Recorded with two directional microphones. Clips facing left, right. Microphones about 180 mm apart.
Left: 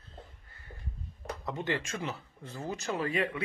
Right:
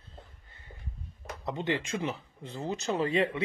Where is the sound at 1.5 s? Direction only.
20° right (ahead or behind).